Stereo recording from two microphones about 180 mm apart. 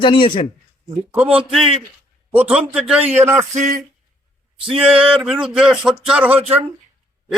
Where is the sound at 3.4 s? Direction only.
40° right (ahead or behind).